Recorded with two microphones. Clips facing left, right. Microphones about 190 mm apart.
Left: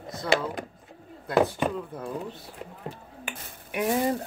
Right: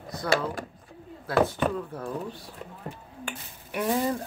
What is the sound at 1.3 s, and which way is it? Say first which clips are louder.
Speech: even; 15° left (ahead or behind).